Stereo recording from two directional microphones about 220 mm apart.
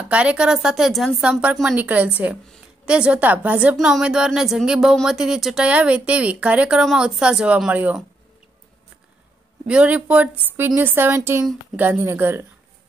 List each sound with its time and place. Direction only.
0.1 s a woman's voice: 5° right (ahead or behind)
9.7 s a woman's voice: 5° right (ahead or behind)